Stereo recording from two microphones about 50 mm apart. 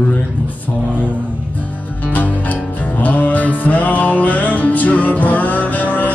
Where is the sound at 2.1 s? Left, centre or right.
Left.